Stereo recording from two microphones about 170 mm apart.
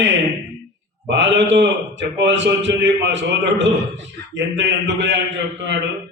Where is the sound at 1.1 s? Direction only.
90° right.